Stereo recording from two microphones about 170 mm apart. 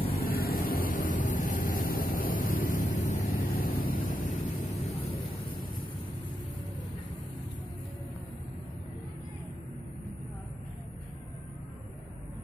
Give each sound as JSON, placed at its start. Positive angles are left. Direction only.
{"t": 0.1, "sound": "vehicle", "side_deg": 60}
{"t": 5.5, "sound": "vehicle", "side_deg": 55}